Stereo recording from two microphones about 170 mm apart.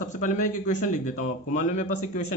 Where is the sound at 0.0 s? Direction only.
50° left (ahead or behind).